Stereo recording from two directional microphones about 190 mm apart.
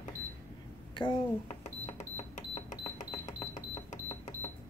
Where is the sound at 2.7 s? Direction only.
40° left (ahead or behind).